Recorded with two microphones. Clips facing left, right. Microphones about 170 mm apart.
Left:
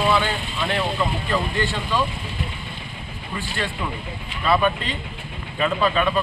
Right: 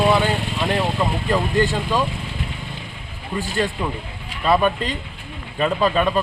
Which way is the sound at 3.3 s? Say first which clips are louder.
Right 6 dB; 40° right (ahead or behind).